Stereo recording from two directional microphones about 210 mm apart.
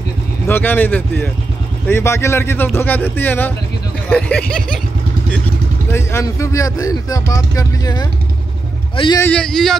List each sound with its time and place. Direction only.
0.5 s speech: 10° left (ahead or behind)
5.9 s a man's voice: 10° left (ahead or behind)
9.2 s speech: 5° left (ahead or behind)